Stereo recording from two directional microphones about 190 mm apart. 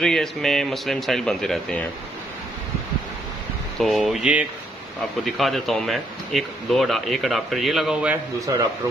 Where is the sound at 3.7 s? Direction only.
Centre (ahead or behind).